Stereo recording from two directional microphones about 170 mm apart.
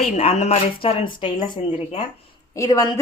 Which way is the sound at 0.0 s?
40° left (ahead or behind).